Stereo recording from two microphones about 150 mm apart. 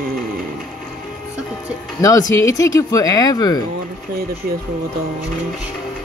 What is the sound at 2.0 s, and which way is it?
Speech, 25° left (ahead or behind).